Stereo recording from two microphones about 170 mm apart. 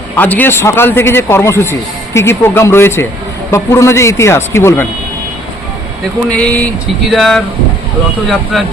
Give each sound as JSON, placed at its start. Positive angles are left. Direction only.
{"t": 0.2, "sound": "a man's voice", "side_deg": 10}
{"t": 6.3, "sound": "a man's voice", "side_deg": 10}